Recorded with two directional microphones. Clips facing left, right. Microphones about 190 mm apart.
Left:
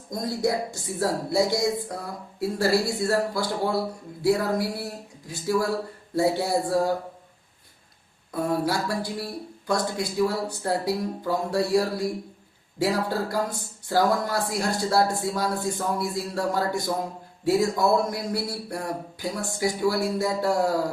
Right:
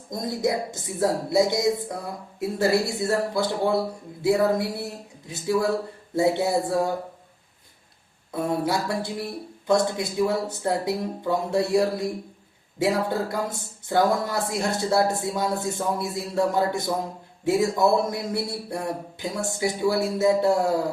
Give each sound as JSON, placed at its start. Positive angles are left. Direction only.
{"t": 0.1, "sound": "speech", "side_deg": -20}
{"t": 8.3, "sound": "speech", "side_deg": -25}